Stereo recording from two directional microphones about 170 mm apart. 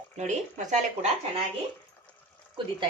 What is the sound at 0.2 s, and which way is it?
Speech, 45° right (ahead or behind).